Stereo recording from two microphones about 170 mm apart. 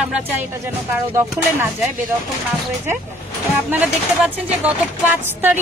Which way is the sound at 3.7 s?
10° right (ahead or behind).